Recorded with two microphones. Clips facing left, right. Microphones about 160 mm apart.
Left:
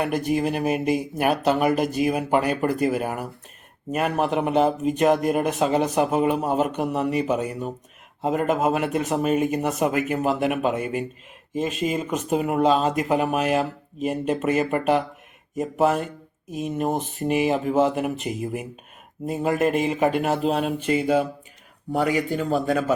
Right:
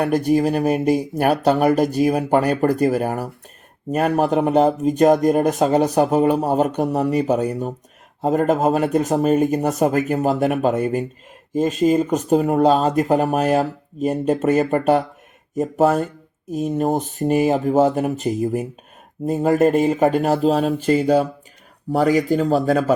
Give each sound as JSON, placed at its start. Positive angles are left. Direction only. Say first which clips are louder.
{"t": 0.3, "sound": "speech", "louder": "right 5 dB", "side_deg": -40}